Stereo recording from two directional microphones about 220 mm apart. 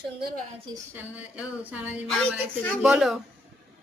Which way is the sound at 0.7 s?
5° right (ahead or behind).